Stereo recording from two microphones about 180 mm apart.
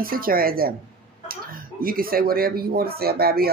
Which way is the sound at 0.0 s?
55° right (ahead or behind).